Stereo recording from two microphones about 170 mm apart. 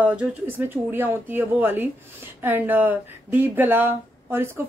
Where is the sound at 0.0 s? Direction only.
10° right (ahead or behind).